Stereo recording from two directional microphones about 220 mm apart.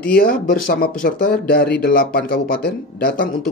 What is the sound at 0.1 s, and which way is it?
Speech, 40° left (ahead or behind).